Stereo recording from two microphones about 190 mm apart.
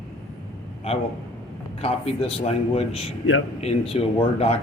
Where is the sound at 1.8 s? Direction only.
30° left (ahead or behind).